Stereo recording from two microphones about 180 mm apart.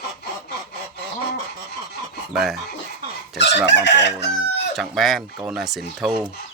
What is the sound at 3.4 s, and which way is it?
Chicken, 75° left (ahead or behind).